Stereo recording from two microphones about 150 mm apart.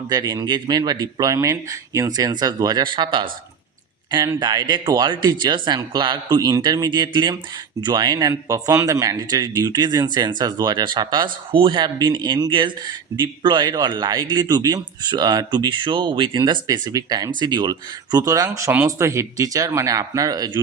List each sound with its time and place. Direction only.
0.1 s a man's voice: 25° right (ahead or behind)
4.4 s a man's voice: 30° right (ahead or behind)